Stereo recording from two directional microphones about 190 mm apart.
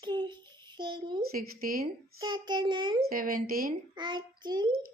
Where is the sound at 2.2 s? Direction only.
20° right (ahead or behind).